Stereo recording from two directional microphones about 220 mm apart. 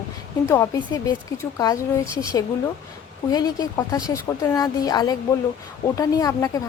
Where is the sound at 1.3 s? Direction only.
15° left (ahead or behind).